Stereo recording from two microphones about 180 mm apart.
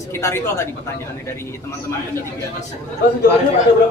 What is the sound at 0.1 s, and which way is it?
Speech, 15° left (ahead or behind).